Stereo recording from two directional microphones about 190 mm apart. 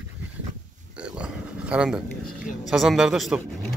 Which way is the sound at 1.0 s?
5° right (ahead or behind).